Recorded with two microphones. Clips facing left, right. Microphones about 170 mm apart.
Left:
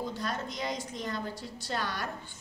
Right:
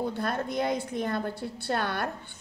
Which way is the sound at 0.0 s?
55° right (ahead or behind).